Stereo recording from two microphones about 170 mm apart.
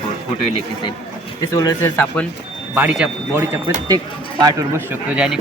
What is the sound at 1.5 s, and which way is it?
Speech, 20° left (ahead or behind).